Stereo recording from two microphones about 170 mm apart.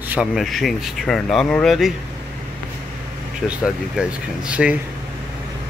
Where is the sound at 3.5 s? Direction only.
5° right (ahead or behind).